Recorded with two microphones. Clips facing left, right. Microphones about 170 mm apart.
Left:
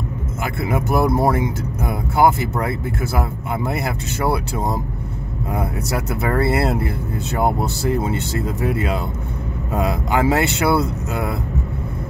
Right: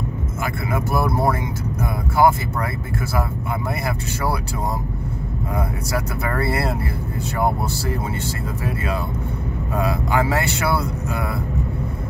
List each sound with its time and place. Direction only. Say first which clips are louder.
0.7 s speech: left 4 dB; 20° left (ahead or behind)
3.8 s speech: left 2 dB; 25° left (ahead or behind)
5.9 s speech: left 3 dB; 25° left (ahead or behind)
9.8 s speech: left 1 dB; 20° left (ahead or behind)